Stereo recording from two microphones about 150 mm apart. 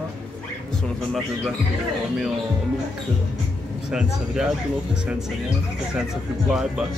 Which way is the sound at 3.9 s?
5° right (ahead or behind).